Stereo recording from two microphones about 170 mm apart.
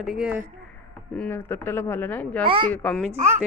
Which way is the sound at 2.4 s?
30° right (ahead or behind).